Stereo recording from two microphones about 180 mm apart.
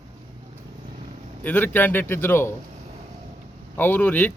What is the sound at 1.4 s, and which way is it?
Speech, 10° left (ahead or behind).